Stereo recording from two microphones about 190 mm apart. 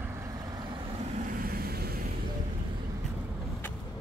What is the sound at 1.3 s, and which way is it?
Vehicle, 55° right (ahead or behind).